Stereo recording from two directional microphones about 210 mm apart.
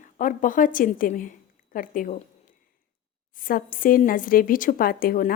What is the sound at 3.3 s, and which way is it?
A woman's voice, 40° left (ahead or behind).